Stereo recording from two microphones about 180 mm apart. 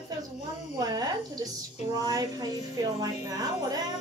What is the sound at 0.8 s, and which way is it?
A woman's voice, 20° right (ahead or behind).